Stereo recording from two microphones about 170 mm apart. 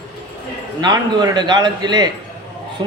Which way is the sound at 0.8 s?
25° right (ahead or behind).